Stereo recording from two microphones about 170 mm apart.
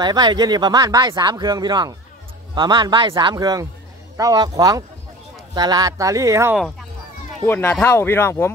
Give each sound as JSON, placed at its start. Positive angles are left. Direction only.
{"t": 0.0, "sound": "speech", "side_deg": -25}
{"t": 7.4, "sound": "speech", "side_deg": 10}